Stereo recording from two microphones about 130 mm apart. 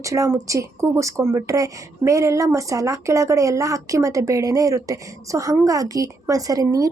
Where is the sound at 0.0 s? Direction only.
25° right (ahead or behind).